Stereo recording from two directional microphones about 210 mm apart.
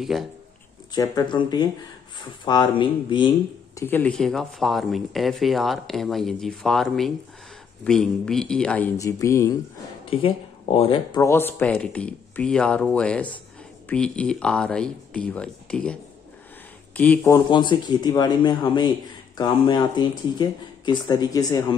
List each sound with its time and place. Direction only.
0.0 s speech: centre (ahead or behind)
0.9 s speech: 20° left (ahead or behind)
3.7 s speech: 10° left (ahead or behind)
10.0 s speech: 25° left (ahead or behind)